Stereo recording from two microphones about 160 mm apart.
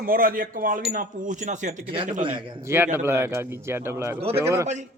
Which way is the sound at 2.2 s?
30° right (ahead or behind).